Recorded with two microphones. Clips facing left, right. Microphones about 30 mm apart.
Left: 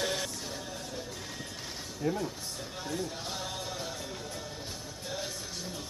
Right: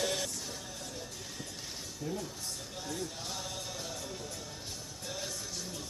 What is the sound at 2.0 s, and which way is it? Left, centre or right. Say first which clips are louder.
Speech: left 7 dB; left.